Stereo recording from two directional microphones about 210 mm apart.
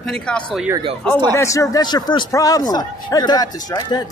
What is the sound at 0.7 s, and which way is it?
Speech, 25° right (ahead or behind).